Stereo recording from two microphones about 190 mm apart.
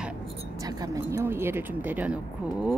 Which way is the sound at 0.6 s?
20° right (ahead or behind).